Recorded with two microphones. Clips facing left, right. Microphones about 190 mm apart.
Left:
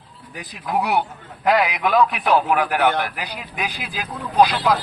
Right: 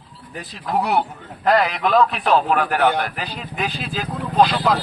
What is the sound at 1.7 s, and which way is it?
Speech, 15° left (ahead or behind).